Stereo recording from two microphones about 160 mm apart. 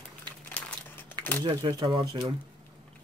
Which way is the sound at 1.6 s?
30° right (ahead or behind).